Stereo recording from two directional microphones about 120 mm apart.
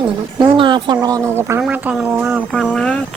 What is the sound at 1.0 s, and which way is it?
Speech, 30° right (ahead or behind).